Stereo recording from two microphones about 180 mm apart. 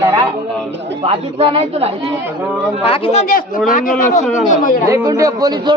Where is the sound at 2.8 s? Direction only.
30° left (ahead or behind).